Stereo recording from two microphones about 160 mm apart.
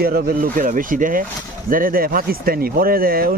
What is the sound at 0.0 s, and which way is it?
Speech, 70° right (ahead or behind).